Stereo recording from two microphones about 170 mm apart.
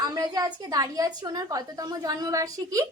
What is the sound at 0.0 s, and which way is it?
A woman's voice, 20° right (ahead or behind).